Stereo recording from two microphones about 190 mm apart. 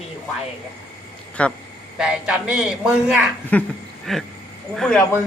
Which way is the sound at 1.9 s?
5° right (ahead or behind).